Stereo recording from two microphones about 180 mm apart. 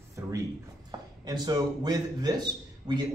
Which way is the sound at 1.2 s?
20° right (ahead or behind).